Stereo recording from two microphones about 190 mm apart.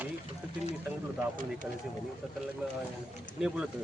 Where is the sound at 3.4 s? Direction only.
5° right (ahead or behind).